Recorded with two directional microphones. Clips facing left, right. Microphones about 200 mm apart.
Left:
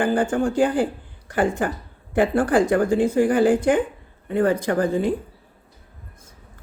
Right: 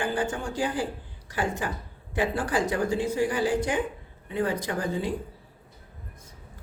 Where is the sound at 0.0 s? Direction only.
55° left (ahead or behind).